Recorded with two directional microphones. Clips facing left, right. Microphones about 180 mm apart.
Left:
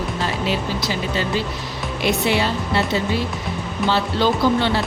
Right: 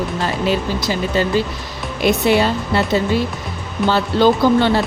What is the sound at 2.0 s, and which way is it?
Speech, 45° right (ahead or behind).